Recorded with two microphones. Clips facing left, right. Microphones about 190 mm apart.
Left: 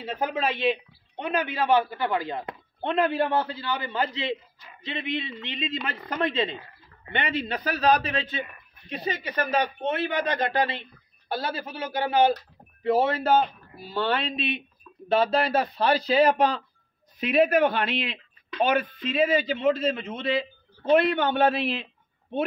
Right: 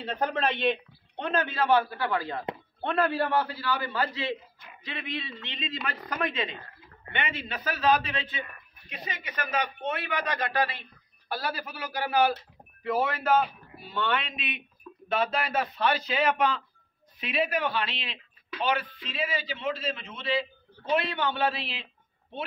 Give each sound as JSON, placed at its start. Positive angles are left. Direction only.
{"t": 0.0, "sound": "a man's voice", "side_deg": 5}
{"t": 17.2, "sound": "a man's voice", "side_deg": 45}